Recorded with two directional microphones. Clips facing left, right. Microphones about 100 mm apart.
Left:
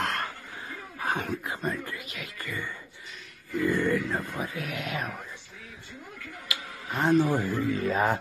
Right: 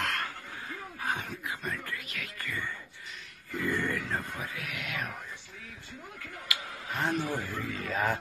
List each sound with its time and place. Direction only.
0.0 s a sound: 30° left (ahead or behind)
1.9 s music: 15° left (ahead or behind)
3.6 s speech: 10° left (ahead or behind)
4.6 s speech: 30° left (ahead or behind)
6.5 s speech: 25° left (ahead or behind)